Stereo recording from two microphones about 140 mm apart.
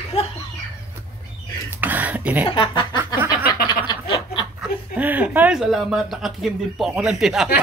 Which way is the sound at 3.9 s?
35° left (ahead or behind).